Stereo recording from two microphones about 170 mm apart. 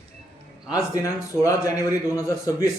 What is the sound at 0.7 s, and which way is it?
Speech, 20° left (ahead or behind).